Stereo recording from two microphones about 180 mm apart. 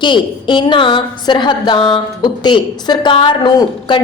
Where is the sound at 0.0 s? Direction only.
25° left (ahead or behind).